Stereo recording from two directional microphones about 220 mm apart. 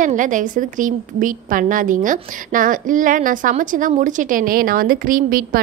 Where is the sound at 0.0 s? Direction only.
35° right (ahead or behind).